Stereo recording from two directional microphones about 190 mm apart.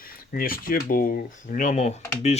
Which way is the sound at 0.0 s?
50° left (ahead or behind).